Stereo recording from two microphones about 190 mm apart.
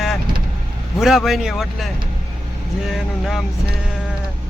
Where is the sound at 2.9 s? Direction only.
Centre (ahead or behind).